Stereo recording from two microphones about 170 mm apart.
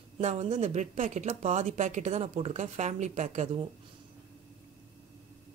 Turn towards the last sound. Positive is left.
turn(degrees=-45)  # may be behind; listen again after turning